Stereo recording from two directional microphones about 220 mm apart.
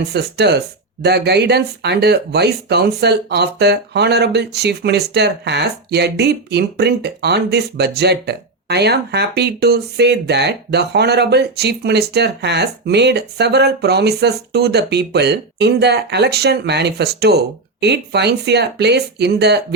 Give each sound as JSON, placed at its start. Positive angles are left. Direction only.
{"t": 0.1, "sound": "speech", "side_deg": -50}